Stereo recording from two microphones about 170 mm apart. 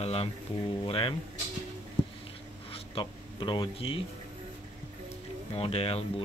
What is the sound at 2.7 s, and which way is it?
Speech, 30° left (ahead or behind).